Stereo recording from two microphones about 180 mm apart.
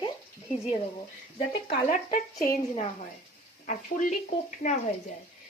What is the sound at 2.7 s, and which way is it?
Speech, 40° left (ahead or behind).